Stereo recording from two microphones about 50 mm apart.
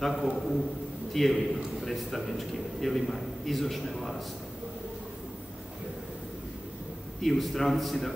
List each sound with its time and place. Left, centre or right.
0.0 s a man's voice: centre
7.2 s a man's voice: centre